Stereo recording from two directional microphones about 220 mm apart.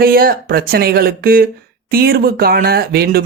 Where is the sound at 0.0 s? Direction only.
40° right (ahead or behind).